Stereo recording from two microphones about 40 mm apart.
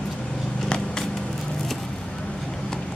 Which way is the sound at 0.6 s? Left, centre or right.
Left.